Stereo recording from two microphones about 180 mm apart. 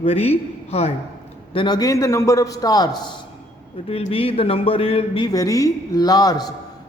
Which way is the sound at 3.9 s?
30° left (ahead or behind).